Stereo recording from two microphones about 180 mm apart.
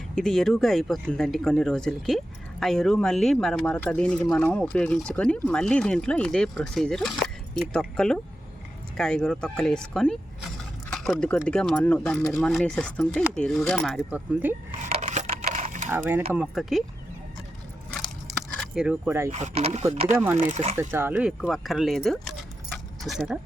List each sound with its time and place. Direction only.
0.2 s speech: centre (ahead or behind)
14.1 s speech: 10° right (ahead or behind)
14.8 s a sound: 40° right (ahead or behind)
15.9 s speech: 10° right (ahead or behind)
18.3 s a sound: centre (ahead or behind)
19.3 s speech: 35° right (ahead or behind)
20.2 s speech: 15° right (ahead or behind)
20.5 s speech: 40° right (ahead or behind)
20.7 s speech: 15° right (ahead or behind)
22.7 s keys jangling: centre (ahead or behind)